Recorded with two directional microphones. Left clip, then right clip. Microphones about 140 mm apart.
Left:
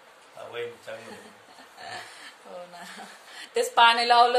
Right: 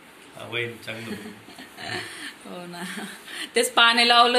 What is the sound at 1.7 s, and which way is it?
Speech, 15° right (ahead or behind).